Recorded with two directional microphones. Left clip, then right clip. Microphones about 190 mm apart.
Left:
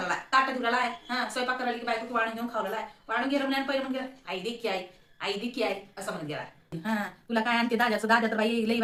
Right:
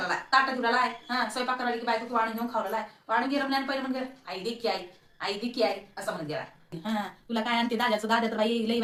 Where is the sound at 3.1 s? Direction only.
15° left (ahead or behind).